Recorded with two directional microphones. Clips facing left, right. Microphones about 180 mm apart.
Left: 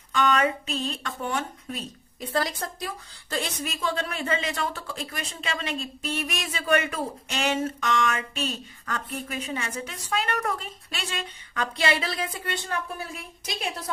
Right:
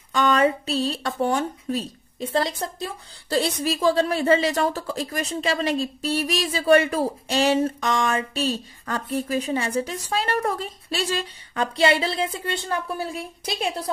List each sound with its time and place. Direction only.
0.1 s speech: 35° right (ahead or behind)